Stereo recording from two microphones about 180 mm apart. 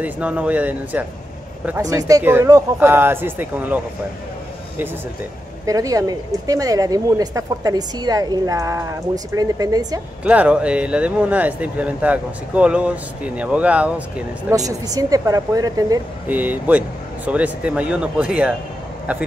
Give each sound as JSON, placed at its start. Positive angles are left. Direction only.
{"t": 0.0, "sound": "speech", "side_deg": -10}
{"t": 5.7, "sound": "speech", "side_deg": -20}
{"t": 10.2, "sound": "speech", "side_deg": -5}
{"t": 14.5, "sound": "speech", "side_deg": -20}
{"t": 16.3, "sound": "speech", "side_deg": -10}